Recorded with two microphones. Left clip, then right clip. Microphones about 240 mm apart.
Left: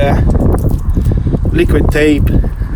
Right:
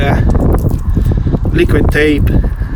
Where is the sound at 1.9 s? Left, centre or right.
Centre.